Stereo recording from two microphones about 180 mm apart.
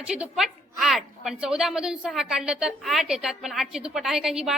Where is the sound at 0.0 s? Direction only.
5° right (ahead or behind).